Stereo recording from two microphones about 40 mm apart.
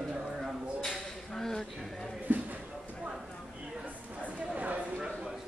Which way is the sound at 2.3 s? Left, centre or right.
Right.